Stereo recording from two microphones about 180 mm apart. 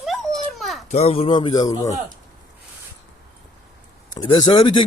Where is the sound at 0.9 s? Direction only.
35° left (ahead or behind).